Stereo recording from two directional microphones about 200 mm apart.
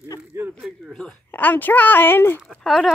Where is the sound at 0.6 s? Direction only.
Centre (ahead or behind).